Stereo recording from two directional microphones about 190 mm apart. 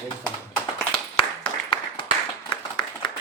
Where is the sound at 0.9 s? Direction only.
30° left (ahead or behind).